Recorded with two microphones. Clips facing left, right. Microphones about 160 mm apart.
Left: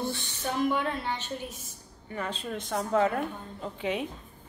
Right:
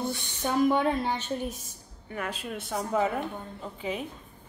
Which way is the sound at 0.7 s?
40° right (ahead or behind).